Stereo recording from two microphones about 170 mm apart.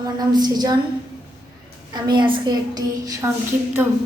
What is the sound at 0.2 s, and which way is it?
Speech, 25° right (ahead or behind).